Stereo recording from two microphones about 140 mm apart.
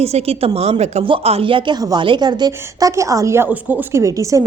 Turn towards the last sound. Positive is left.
turn(degrees=-20)  # may be behind; listen again after turning